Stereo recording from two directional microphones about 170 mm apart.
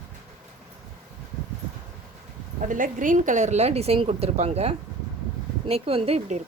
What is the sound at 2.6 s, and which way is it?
A woman's voice, 50° right (ahead or behind).